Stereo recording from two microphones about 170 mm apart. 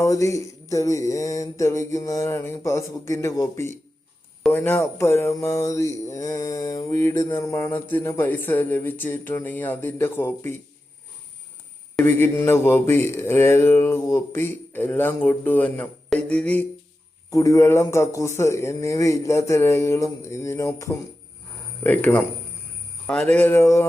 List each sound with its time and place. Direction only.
0.0 s music: 20° left (ahead or behind)
11.9 s music: 10° left (ahead or behind)
17.3 s music: 20° left (ahead or behind)